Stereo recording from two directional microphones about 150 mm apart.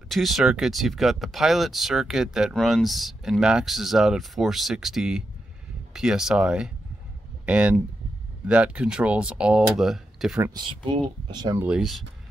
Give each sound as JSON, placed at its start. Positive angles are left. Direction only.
{"t": 0.1, "sound": "speech", "side_deg": 0}
{"t": 10.5, "sound": "speech", "side_deg": -35}
{"t": 11.6, "sound": "speech", "side_deg": -5}